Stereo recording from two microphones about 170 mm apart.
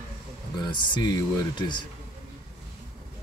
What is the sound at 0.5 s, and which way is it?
Speech, 25° left (ahead or behind).